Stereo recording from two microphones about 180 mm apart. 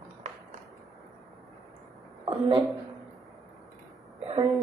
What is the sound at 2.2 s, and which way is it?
Speech, 25° right (ahead or behind).